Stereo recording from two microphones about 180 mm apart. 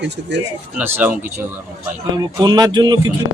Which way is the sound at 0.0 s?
75° right (ahead or behind).